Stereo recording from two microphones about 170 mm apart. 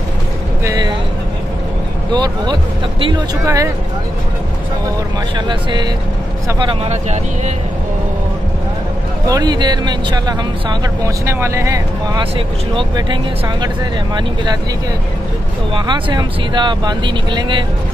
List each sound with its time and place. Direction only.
0.7 s speech: 25° right (ahead or behind)
2.1 s speech: 25° right (ahead or behind)
5.5 s speech: 25° right (ahead or behind)
9.3 s speech: 25° right (ahead or behind)
11.2 s speech: 15° right (ahead or behind)
15.7 s speech: 25° right (ahead or behind)